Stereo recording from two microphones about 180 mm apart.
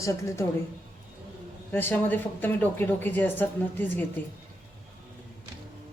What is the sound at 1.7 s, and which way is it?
Speech, 10° left (ahead or behind).